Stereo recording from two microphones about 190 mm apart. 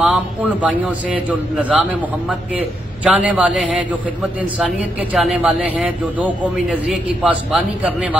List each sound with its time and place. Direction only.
0.0 s a man's voice: 5° right (ahead or behind)